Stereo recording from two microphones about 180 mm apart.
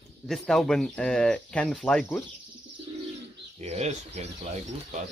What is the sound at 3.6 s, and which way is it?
Speech, 40° right (ahead or behind).